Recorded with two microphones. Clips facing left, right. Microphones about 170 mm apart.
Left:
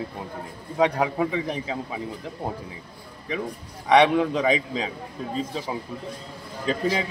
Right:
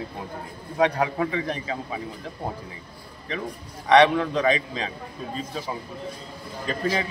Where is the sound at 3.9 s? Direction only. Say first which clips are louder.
Even; 10° left (ahead or behind).